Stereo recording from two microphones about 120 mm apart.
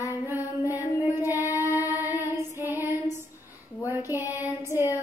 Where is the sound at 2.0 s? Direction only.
15° right (ahead or behind).